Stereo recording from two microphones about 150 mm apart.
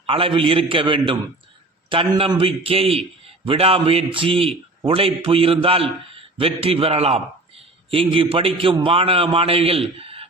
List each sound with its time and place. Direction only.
0.0 s a man's voice: 35° right (ahead or behind)